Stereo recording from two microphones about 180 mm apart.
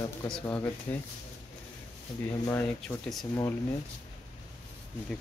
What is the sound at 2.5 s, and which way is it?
Speech, 10° left (ahead or behind).